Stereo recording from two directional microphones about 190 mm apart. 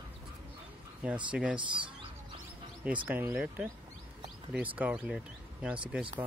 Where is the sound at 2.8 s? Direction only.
10° right (ahead or behind).